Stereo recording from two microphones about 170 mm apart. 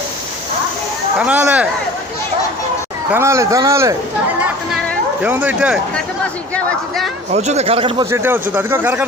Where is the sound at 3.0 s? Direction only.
15° right (ahead or behind).